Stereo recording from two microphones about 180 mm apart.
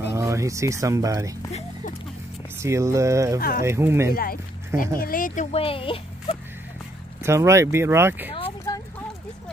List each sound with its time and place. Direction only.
0.0 s speech: 15° right (ahead or behind)
2.6 s speech: 15° right (ahead or behind)
3.3 s speech: 55° left (ahead or behind)
3.6 s speech: 15° right (ahead or behind)
4.1 s speech: 55° left (ahead or behind); by 6.3 s 30° left (ahead or behind)
7.2 s speech: 15° right (ahead or behind)